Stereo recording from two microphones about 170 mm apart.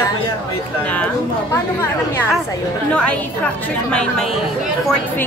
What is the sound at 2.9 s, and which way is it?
Speech, 5° left (ahead or behind).